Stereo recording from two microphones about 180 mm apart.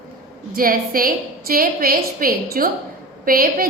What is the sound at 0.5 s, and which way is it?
A woman's voice, 50° right (ahead or behind).